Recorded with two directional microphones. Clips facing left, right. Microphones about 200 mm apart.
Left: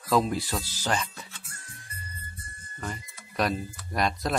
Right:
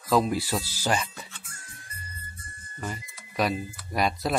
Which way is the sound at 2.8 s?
5° right (ahead or behind).